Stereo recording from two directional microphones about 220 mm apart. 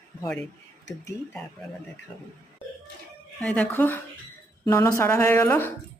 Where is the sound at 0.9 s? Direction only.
15° left (ahead or behind).